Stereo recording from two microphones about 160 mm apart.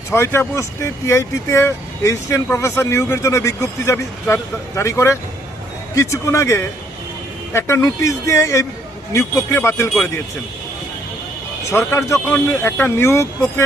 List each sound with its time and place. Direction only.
0.1 s speech: 15° left (ahead or behind)
11.7 s speech: 15° left (ahead or behind)